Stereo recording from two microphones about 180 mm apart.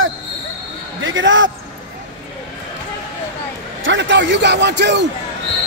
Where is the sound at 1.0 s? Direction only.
90° right.